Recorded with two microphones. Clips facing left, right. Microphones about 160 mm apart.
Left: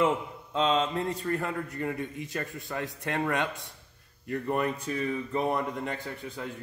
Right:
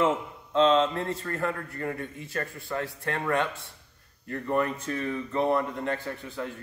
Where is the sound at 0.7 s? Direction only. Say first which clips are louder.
Right 1 dB; 15° left (ahead or behind).